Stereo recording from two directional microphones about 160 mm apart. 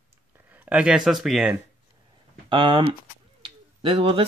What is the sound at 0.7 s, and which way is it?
Speech, 5° right (ahead or behind).